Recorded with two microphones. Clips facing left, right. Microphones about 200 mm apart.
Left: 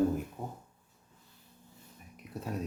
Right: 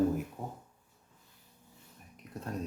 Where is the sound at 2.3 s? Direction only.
5° left (ahead or behind).